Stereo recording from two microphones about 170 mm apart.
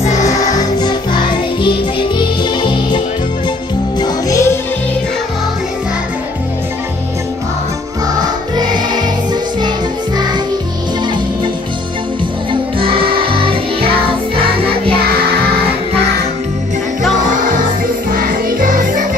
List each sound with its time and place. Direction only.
0.7 s music: 25° left (ahead or behind)
4.0 s music: 20° left (ahead or behind)
8.1 s music: 25° right (ahead or behind)
12.7 s music: 30° right (ahead or behind)
18.1 s music: 55° right (ahead or behind)